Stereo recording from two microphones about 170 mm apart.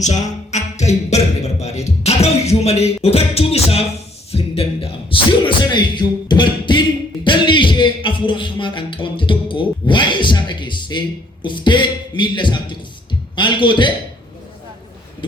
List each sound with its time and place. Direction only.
0.0 s music: 45° left (ahead or behind)
4.3 s speech: 35° left (ahead or behind)
7.3 s a sound: 30° left (ahead or behind)
13.3 s a man's voice: 30° left (ahead or behind)